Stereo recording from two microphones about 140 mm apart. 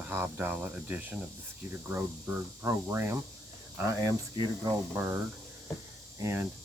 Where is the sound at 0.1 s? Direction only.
15° right (ahead or behind).